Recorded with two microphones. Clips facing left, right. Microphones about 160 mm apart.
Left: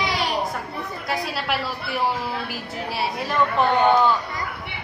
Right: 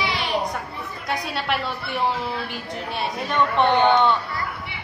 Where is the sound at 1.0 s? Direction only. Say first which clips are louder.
Right 1 dB; centre (ahead or behind).